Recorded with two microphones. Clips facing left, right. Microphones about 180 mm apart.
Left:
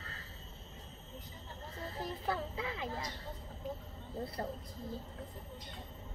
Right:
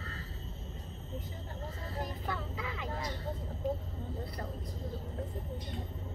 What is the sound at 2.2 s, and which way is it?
Music, 30° left (ahead or behind).